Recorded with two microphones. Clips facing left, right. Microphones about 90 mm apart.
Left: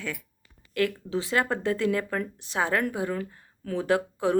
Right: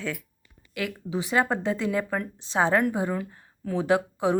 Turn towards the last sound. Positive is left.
turn(degrees=-20)  # may be behind; listen again after turning